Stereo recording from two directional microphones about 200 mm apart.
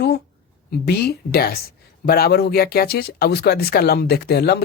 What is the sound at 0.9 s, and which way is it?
Speech, 55° left (ahead or behind).